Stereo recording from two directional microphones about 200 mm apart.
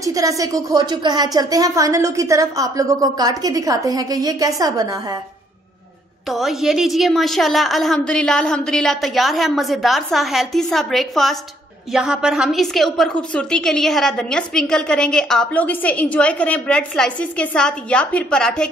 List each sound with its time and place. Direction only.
0.0 s speech: 15° right (ahead or behind)
6.2 s a woman's voice: centre (ahead or behind)